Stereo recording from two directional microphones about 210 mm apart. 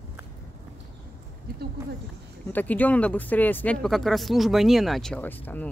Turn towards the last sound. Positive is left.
turn(degrees=10)  # may be behind; listen again after turning